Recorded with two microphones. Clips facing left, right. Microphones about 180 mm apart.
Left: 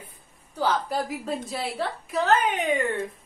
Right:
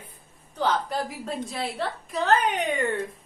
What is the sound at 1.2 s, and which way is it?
A woman's voice, centre (ahead or behind).